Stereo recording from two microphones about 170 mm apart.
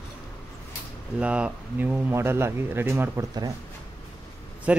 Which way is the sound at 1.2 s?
5° right (ahead or behind).